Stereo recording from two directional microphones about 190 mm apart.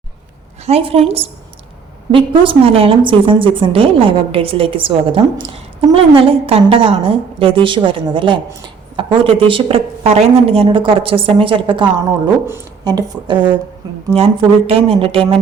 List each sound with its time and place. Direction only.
0.6 s a woman's voice: 30° right (ahead or behind)